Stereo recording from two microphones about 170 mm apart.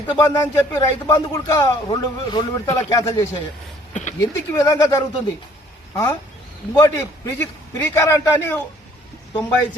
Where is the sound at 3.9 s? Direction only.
45° left (ahead or behind).